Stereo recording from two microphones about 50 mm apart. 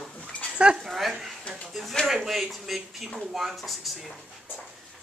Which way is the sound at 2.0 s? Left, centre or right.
Centre.